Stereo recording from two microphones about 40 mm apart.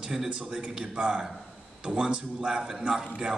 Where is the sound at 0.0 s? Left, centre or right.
Centre.